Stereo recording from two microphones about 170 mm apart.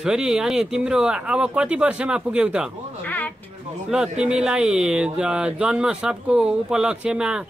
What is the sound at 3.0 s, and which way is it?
Speech, 10° left (ahead or behind).